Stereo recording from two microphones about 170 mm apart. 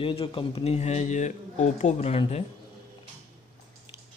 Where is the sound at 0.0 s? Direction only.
35° left (ahead or behind).